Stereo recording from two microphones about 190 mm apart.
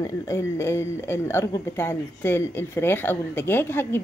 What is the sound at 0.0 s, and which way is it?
Speech, 15° left (ahead or behind).